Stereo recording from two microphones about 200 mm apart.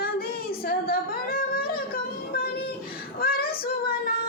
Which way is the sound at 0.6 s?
50° left (ahead or behind).